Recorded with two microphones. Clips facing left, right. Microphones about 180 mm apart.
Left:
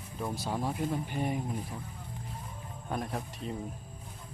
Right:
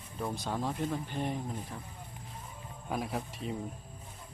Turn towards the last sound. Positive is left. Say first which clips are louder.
# even
turn(degrees=0)  # may be behind; listen again after turning